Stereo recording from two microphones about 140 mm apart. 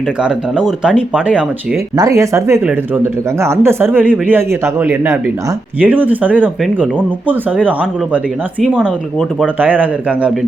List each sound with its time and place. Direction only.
0.2 s speech: 5° right (ahead or behind)
2.0 s speech: 20° right (ahead or behind)